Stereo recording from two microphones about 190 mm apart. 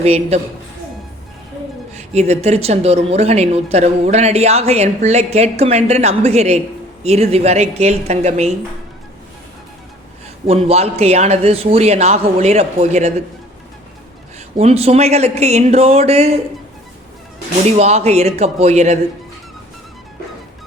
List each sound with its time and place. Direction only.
0.0 s speech: 35° right (ahead or behind)
1.9 s speech: 35° right (ahead or behind)
10.4 s speech: 30° right (ahead or behind)
14.3 s speech: 35° right (ahead or behind)
17.7 s speech: 35° right (ahead or behind)